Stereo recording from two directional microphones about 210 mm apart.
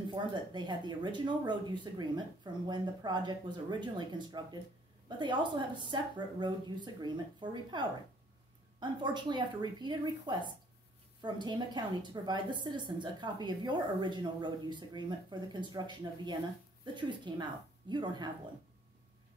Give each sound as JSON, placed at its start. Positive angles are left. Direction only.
{"t": 0.1, "sound": "a woman's voice", "side_deg": -20}